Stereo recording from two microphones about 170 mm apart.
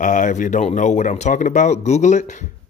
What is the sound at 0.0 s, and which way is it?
Speech, 45° left (ahead or behind).